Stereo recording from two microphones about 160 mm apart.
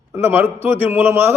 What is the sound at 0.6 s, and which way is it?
Speech, 10° right (ahead or behind).